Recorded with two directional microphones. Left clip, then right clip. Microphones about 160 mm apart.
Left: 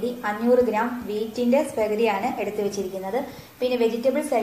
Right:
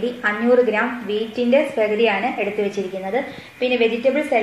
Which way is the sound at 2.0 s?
25° right (ahead or behind).